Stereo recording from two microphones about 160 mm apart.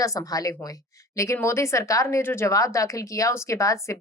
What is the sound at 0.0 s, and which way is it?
A woman's voice, 20° left (ahead or behind).